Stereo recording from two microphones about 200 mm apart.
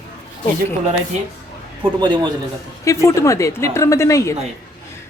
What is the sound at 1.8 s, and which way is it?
Speech, 20° right (ahead or behind).